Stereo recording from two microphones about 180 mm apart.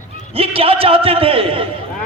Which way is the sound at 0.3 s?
30° right (ahead or behind).